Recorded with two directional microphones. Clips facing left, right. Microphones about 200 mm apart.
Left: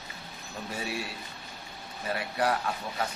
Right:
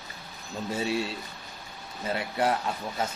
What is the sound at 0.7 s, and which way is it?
Speech, 25° right (ahead or behind).